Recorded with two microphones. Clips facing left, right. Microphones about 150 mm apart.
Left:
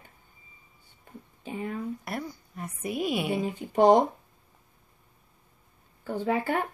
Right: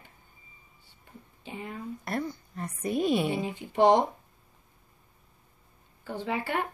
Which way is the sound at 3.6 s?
45° left (ahead or behind).